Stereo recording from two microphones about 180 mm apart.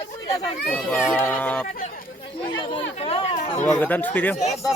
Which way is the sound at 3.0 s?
35° left (ahead or behind).